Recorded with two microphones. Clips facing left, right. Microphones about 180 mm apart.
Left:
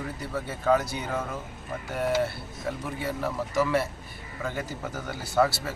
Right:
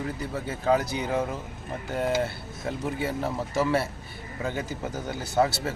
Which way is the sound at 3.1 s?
25° right (ahead or behind).